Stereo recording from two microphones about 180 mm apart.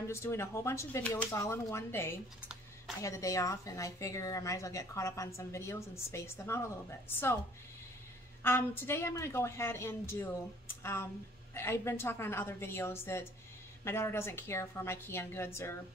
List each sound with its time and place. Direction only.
0.1 s a woman's voice: 15° left (ahead or behind)
8.4 s a woman's voice: 10° left (ahead or behind)